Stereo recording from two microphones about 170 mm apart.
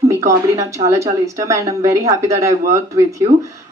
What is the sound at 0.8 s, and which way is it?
Speech, 15° right (ahead or behind).